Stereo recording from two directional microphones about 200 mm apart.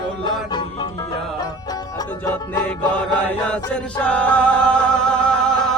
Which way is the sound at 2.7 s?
5° left (ahead or behind).